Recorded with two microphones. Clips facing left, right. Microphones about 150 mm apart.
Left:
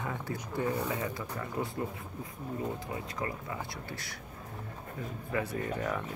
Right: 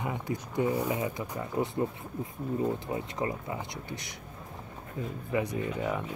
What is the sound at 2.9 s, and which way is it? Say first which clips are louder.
Speech: right 4 dB; 25° right (ahead or behind).